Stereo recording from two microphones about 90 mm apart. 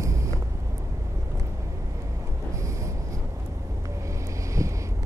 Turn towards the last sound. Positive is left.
turn(degrees=-35)  # may be behind; listen again after turning